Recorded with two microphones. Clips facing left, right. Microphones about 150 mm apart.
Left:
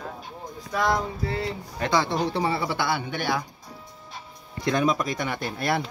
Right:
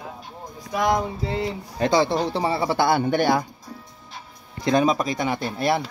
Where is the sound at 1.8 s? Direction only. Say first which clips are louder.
Right 4 dB; 30° right (ahead or behind).